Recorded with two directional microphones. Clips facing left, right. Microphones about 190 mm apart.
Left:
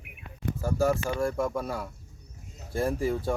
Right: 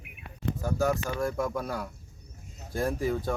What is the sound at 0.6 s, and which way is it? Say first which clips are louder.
Speech: left 2 dB; 5° left (ahead or behind).